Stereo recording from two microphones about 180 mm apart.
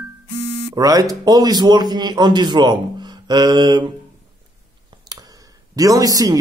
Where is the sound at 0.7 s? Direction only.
20° right (ahead or behind).